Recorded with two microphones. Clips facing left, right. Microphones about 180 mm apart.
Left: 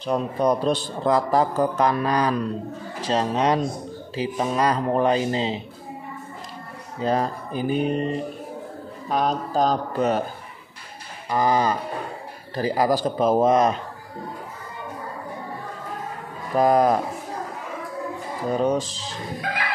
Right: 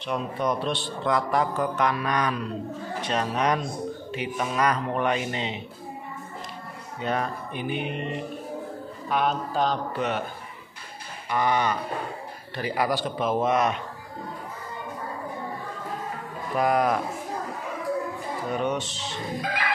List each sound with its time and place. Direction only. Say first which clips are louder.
0.0 s a man's voice: left 5 dB; 35° left (ahead or behind)
7.0 s a man's voice: left 5 dB; 35° left (ahead or behind)
11.2 s a man's voice: left 4 dB; 35° left (ahead or behind)
16.5 s a man's voice: left 5 dB; 35° left (ahead or behind)
18.5 s a man's voice: left 6 dB; 35° left (ahead or behind)